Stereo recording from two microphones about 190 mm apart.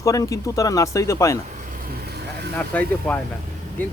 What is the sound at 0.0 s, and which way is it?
Speech, 15° left (ahead or behind).